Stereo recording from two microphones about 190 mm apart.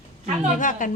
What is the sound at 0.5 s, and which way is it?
Speech, 45° left (ahead or behind).